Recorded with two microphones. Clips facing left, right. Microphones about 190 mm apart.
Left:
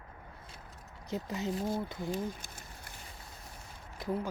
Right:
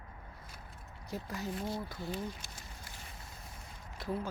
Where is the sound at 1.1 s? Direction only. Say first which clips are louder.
Left 4 dB; 20° left (ahead or behind).